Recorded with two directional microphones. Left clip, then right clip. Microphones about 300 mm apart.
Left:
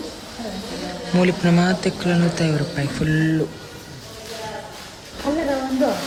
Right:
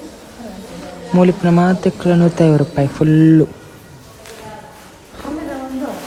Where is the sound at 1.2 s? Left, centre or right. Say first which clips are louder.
Right 6 dB; centre.